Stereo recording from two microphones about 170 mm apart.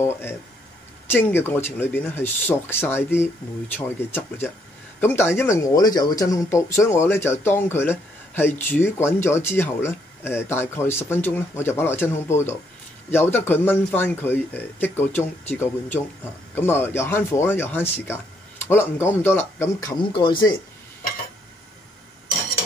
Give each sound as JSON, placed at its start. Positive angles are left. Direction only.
{"t": 0.0, "sound": "speech", "side_deg": 15}